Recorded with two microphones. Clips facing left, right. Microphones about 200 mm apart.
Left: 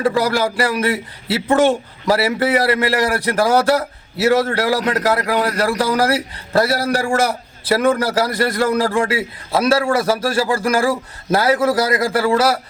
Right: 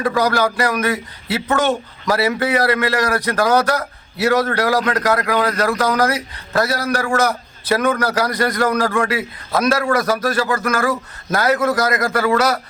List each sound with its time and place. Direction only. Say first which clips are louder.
0.0 s a man's voice: even; 30° left (ahead or behind)